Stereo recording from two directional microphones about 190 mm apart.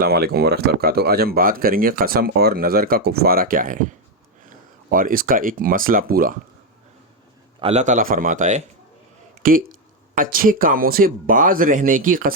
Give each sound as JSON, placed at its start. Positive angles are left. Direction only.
{"t": 0.0, "sound": "speech", "side_deg": -55}
{"t": 7.6, "sound": "a man's voice", "side_deg": -35}